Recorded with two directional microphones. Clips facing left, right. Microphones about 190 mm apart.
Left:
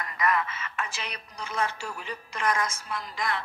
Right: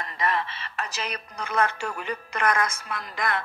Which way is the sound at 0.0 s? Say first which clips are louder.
Even; 30° right (ahead or behind).